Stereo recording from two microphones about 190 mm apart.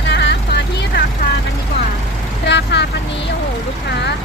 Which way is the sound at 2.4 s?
65° left (ahead or behind).